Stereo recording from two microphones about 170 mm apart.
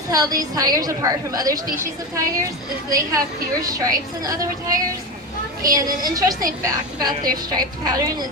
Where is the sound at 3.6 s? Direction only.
20° right (ahead or behind).